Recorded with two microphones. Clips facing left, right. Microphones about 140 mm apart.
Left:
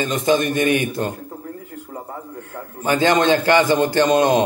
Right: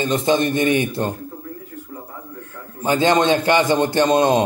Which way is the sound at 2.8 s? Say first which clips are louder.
Even; 20° right (ahead or behind).